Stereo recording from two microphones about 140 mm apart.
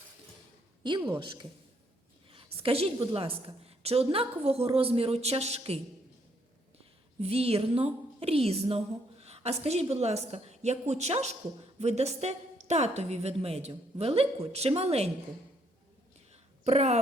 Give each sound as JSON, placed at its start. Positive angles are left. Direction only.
{"t": 0.8, "sound": "a woman's voice", "side_deg": -35}
{"t": 2.6, "sound": "a woman's voice", "side_deg": -45}
{"t": 7.2, "sound": "a woman's voice", "side_deg": -45}
{"t": 16.3, "sound": "a sound", "side_deg": -50}